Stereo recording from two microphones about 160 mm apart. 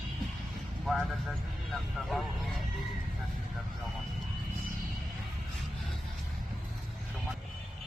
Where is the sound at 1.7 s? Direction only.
Centre (ahead or behind).